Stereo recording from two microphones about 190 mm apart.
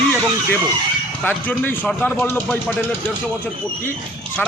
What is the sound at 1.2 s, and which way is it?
A man's voice, 10° left (ahead or behind).